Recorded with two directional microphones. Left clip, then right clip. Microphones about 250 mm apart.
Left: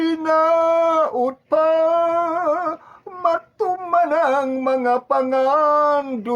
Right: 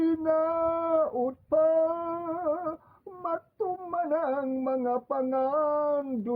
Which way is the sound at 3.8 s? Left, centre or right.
Centre.